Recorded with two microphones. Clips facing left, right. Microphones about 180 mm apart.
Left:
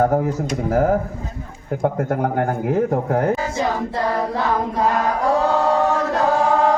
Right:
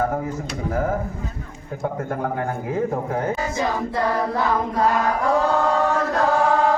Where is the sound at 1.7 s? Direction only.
60° left (ahead or behind).